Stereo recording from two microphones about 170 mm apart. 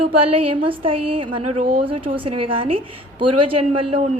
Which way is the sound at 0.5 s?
30° right (ahead or behind).